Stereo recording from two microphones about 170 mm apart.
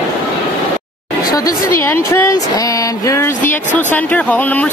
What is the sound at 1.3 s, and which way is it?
Speech, 20° left (ahead or behind).